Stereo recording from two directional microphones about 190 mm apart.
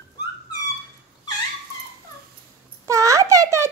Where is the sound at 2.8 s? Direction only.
15° right (ahead or behind).